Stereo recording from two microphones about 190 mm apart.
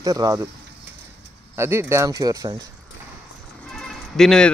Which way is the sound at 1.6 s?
15° right (ahead or behind).